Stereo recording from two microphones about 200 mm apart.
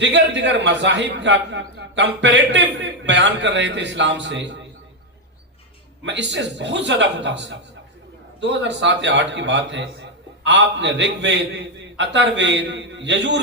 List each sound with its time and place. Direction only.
0.0 s a man's voice: 60° right (ahead or behind)
6.1 s a man's voice: 60° right (ahead or behind)